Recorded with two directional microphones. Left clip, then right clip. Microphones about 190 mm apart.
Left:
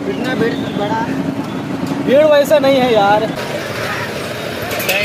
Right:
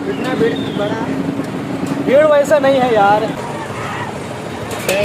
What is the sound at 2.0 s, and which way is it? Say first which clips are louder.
Speech: even; 15° left (ahead or behind).